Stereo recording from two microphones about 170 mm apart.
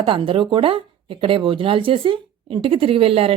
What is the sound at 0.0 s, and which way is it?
Speech, 30° right (ahead or behind).